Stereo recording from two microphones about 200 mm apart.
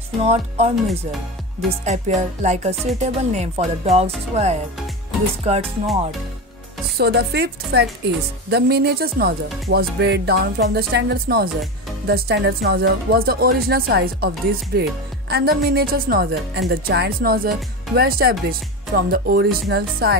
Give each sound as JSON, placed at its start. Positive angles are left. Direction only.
{"t": 0.2, "sound": "speech", "side_deg": -30}
{"t": 7.0, "sound": "a woman's voice", "side_deg": -55}